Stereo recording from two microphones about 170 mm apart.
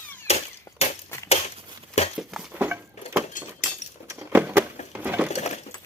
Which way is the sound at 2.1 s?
5° right (ahead or behind).